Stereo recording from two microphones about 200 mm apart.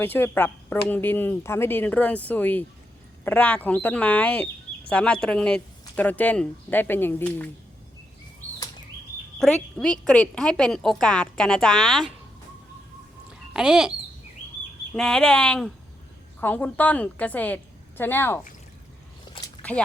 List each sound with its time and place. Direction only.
0.0 s a woman's voice: 10° left (ahead or behind)
9.4 s a woman's voice: 5° left (ahead or behind)
13.5 s speech: 5° right (ahead or behind)
14.9 s a woman's voice: 5° left (ahead or behind)
19.6 s biting: 25° left (ahead or behind)